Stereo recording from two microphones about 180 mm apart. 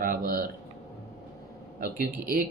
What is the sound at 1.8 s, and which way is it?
Speech, 55° right (ahead or behind).